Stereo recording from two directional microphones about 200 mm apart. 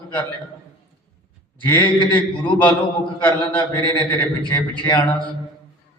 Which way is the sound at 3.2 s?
20° left (ahead or behind).